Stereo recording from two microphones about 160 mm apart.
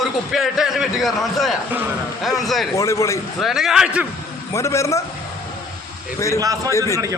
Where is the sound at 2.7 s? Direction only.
20° left (ahead or behind).